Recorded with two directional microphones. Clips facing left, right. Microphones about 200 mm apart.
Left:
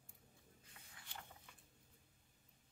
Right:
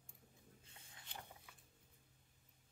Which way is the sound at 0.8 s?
20° right (ahead or behind).